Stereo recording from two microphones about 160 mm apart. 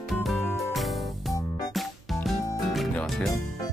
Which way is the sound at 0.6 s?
Centre (ahead or behind).